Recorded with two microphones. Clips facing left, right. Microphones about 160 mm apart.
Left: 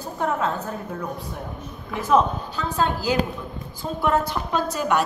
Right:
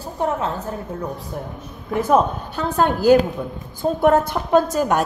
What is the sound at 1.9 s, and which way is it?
A woman's voice, 55° right (ahead or behind).